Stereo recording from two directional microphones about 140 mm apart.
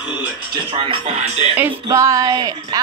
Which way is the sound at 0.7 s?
40° right (ahead or behind).